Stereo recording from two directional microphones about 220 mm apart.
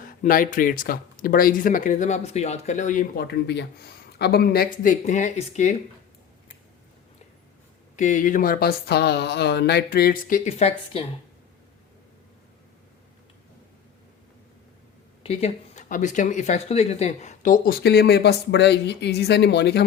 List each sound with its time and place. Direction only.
0.0 s speech: 40° left (ahead or behind)
7.9 s speech: 35° left (ahead or behind)
15.2 s speech: 25° left (ahead or behind); by 19.8 s 50° left (ahead or behind)